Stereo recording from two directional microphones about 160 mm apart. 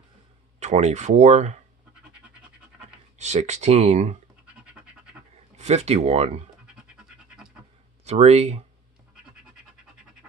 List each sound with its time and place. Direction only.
0.6 s speech: 45° right (ahead or behind)
3.2 s speech: 45° right (ahead or behind)
5.6 s speech: 45° right (ahead or behind)
8.0 s speech: 45° right (ahead or behind)